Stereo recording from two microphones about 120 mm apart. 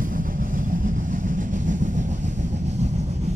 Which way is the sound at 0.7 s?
90° right.